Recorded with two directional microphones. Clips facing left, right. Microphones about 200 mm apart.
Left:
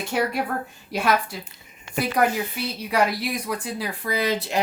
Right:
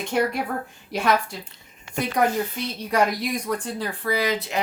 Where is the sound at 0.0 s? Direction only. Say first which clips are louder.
Right 1 dB; 5° left (ahead or behind).